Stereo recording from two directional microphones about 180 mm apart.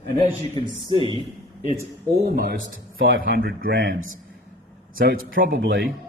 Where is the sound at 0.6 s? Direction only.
30° right (ahead or behind).